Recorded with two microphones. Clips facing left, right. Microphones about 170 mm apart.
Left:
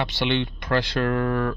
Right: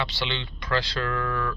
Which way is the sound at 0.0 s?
50° left (ahead or behind).